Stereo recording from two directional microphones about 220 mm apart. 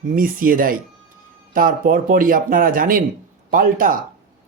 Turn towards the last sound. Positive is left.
turn(degrees=-40)  # may be behind; listen again after turning